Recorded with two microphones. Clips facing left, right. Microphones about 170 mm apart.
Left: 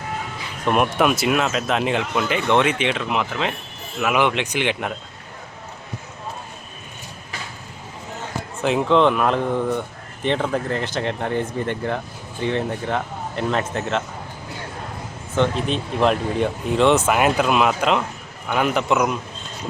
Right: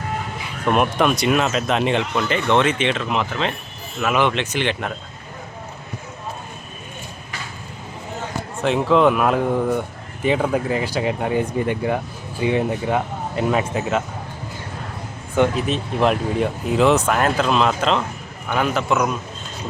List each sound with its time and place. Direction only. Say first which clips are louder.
0.7 s speech: even; 5° left (ahead or behind)
8.6 s speech: right 1 dB; centre (ahead or behind)
15.4 s speech: right 2 dB; 5° right (ahead or behind); by 19.1 s 15° left (ahead or behind)